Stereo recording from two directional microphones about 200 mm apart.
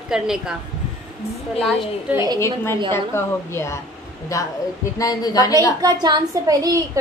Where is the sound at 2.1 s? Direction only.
15° right (ahead or behind).